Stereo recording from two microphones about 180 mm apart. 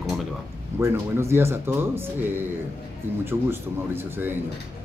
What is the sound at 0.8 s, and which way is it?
Speech, 15° right (ahead or behind).